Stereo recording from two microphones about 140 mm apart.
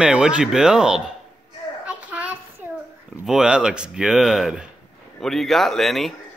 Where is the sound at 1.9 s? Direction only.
10° right (ahead or behind).